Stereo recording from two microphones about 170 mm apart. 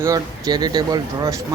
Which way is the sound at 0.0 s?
20° right (ahead or behind).